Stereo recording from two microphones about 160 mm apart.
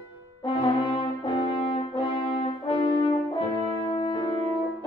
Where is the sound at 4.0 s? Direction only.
30° left (ahead or behind).